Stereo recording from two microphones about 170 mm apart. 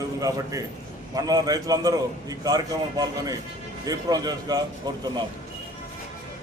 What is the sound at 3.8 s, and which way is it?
Speech, 25° right (ahead or behind).